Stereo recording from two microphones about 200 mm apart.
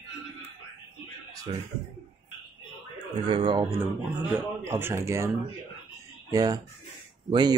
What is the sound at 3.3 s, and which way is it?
Speech, 25° right (ahead or behind).